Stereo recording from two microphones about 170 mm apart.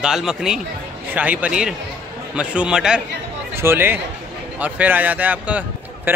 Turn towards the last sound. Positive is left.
turn(degrees=-10)  # may be behind; listen again after turning